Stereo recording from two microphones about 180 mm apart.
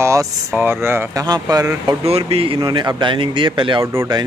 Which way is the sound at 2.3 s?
30° right (ahead or behind).